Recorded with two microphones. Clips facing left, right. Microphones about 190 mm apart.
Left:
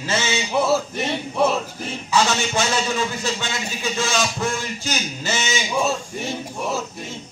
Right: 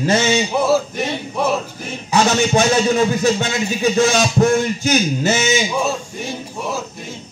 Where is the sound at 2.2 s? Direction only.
40° right (ahead or behind).